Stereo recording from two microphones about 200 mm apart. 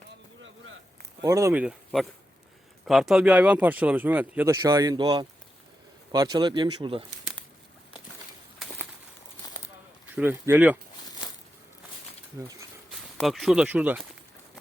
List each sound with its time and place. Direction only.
1.2 s speech: 15° right (ahead or behind)
1.6 s speech: centre (ahead or behind); by 7.0 s 25° right (ahead or behind)
10.2 s speech: 10° right (ahead or behind)
12.4 s speech: 15° right (ahead or behind)
13.1 s speech: centre (ahead or behind)